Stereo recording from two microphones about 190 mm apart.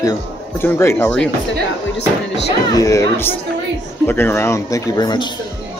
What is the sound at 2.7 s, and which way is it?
Speech, 20° left (ahead or behind).